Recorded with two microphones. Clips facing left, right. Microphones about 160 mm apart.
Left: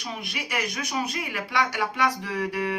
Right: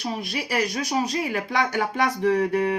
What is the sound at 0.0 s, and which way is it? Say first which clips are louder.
A woman's voice: right 6 dB; 40° right (ahead or behind).